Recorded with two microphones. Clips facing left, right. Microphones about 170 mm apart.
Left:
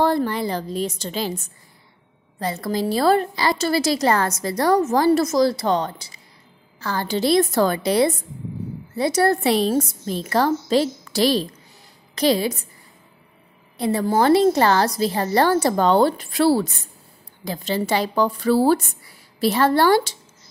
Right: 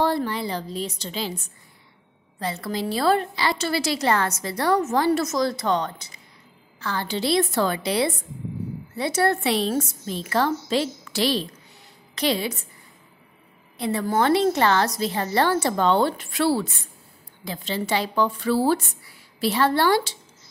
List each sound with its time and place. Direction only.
0.0 s a woman's voice: 45° left (ahead or behind)
13.7 s a woman's voice: 40° left (ahead or behind)